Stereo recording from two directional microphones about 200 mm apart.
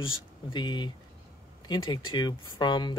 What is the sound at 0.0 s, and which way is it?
Speech, 25° left (ahead or behind).